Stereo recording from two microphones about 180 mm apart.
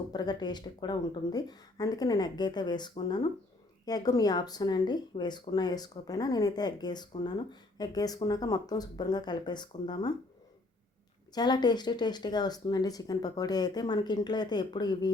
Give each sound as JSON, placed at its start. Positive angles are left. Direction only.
{"t": 0.1, "sound": "speech", "side_deg": 20}
{"t": 11.3, "sound": "speech", "side_deg": 25}